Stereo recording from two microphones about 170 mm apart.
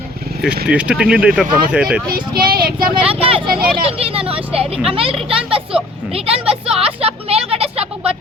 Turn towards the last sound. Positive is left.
turn(degrees=-35)  # may be behind; listen again after turning